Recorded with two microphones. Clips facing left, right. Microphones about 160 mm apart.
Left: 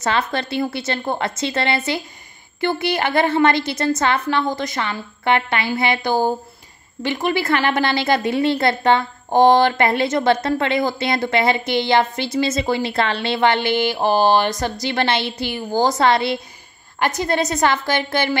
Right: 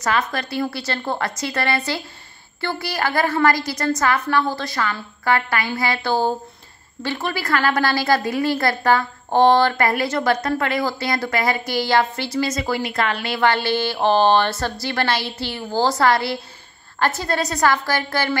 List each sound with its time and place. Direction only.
0.0 s a woman's voice: 25° left (ahead or behind)